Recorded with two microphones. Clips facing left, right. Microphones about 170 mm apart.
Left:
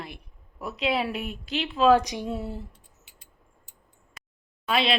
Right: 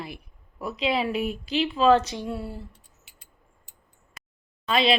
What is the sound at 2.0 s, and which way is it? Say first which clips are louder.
Speech: left 1 dB; 15° left (ahead or behind).